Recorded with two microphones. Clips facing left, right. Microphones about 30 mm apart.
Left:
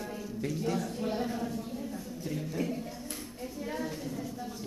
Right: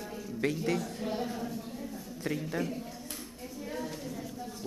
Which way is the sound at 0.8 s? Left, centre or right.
Centre.